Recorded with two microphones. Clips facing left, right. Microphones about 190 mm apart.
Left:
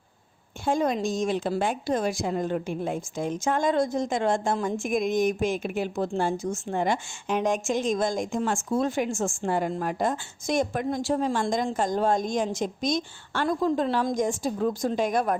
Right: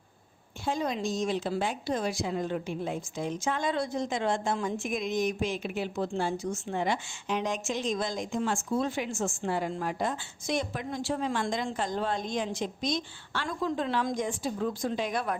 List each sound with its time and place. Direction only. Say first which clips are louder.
0.6 s a woman's voice: left 6 dB; 50° left (ahead or behind)